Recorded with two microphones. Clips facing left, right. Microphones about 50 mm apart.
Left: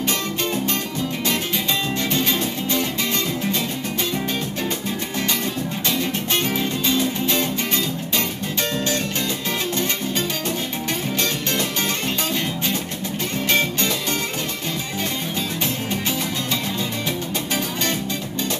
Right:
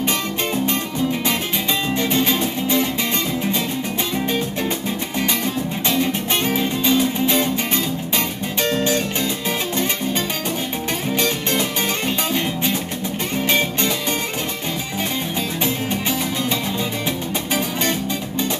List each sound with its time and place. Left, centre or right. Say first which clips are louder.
2.0 s music: right 3 dB; right
6.4 s music: right 3 dB; centre
13.5 s music: even; centre